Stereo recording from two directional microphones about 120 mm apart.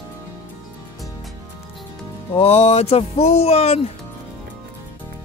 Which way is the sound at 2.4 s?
60° left (ahead or behind).